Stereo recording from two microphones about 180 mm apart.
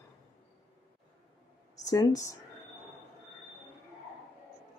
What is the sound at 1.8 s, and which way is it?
Speech, 20° left (ahead or behind).